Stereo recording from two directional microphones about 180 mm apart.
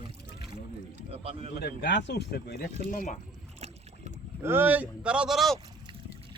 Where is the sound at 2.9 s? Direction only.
45° left (ahead or behind).